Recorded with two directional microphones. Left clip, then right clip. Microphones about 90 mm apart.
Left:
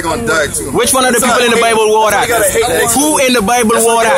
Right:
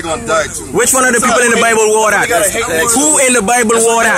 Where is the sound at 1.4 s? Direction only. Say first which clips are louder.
Even; 15° right (ahead or behind).